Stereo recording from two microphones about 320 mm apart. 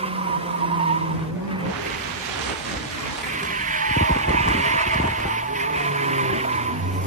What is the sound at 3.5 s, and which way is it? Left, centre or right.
Vehicle, right.